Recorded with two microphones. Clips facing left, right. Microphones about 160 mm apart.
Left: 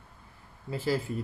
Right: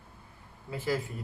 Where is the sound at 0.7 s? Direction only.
30° left (ahead or behind).